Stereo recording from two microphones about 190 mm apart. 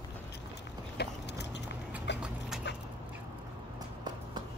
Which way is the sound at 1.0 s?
60° left (ahead or behind).